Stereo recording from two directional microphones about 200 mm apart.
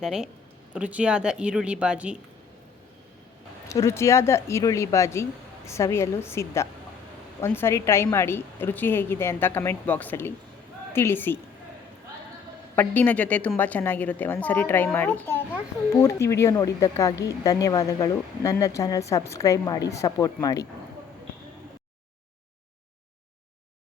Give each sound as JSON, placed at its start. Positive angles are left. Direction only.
{"t": 0.0, "sound": "a woman's voice", "side_deg": -5}
{"t": 3.7, "sound": "a woman's voice", "side_deg": 15}
{"t": 12.7, "sound": "a woman's voice", "side_deg": 10}